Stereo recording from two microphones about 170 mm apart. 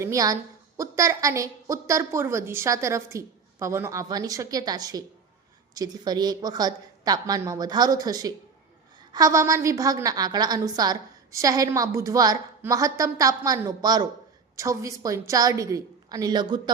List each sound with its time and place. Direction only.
0.0 s a woman's voice: 20° right (ahead or behind)